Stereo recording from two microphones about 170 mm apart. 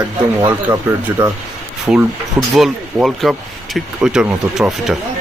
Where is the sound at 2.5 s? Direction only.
Centre (ahead or behind).